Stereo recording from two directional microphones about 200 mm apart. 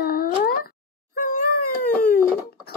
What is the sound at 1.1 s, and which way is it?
Cat, 40° left (ahead or behind).